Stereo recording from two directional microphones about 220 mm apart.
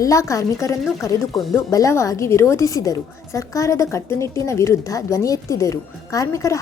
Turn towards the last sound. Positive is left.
turn(degrees=15)  # may be behind; listen again after turning